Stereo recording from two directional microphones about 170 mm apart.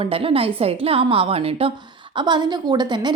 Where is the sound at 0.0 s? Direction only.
35° right (ahead or behind).